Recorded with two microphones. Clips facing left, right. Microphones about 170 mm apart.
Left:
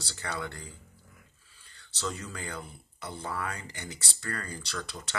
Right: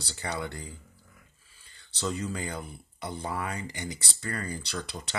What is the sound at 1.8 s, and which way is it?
Speech, 15° right (ahead or behind).